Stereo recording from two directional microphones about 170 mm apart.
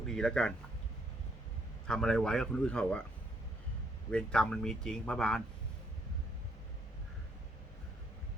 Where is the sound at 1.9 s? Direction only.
5° left (ahead or behind).